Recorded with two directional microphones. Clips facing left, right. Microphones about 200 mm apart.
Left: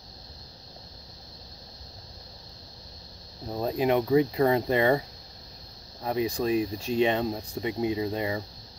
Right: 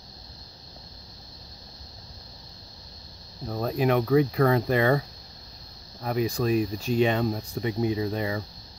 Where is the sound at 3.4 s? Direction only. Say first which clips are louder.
Right 1 dB; 20° left (ahead or behind).